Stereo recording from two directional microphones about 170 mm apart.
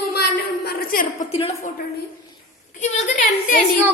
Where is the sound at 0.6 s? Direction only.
60° left (ahead or behind).